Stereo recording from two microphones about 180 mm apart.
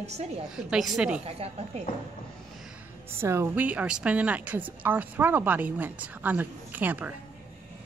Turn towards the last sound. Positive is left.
turn(degrees=-10)  # may be behind; listen again after turning